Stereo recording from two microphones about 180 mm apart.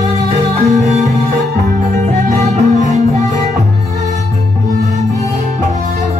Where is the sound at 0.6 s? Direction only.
40° right (ahead or behind).